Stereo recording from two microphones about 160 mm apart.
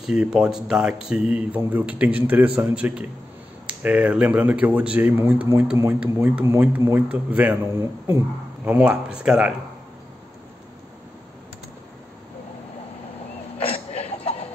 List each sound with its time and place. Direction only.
0.0 s speech: 5° right (ahead or behind)
8.6 s speech: 10° right (ahead or behind)
13.7 s a sound: 40° left (ahead or behind)